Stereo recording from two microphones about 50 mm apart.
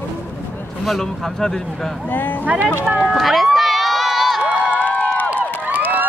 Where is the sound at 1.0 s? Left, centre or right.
Centre.